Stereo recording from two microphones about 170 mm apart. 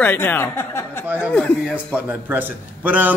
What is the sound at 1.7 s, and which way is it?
A man's voice, 10° right (ahead or behind).